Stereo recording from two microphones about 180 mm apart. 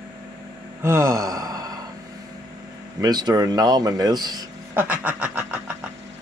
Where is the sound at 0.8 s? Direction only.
15° right (ahead or behind).